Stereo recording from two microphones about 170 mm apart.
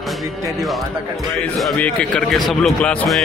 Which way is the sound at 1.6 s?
5° left (ahead or behind).